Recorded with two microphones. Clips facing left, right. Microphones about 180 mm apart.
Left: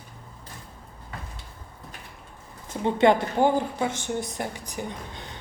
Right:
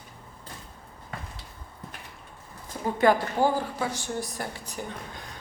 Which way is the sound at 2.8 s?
25° left (ahead or behind).